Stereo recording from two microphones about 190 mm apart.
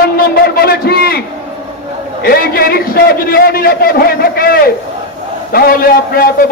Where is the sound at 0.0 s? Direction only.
50° left (ahead or behind).